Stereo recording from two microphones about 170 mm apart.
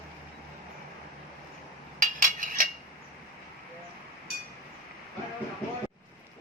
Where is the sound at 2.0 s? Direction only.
50° right (ahead or behind).